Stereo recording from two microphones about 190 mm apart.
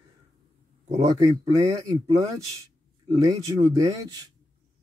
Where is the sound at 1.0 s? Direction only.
20° right (ahead or behind).